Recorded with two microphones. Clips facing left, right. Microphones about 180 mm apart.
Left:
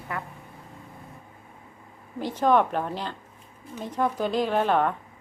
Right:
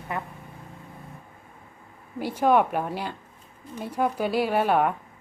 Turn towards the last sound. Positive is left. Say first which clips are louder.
# right 1 dB
turn(degrees=-10)  # may be behind; listen again after turning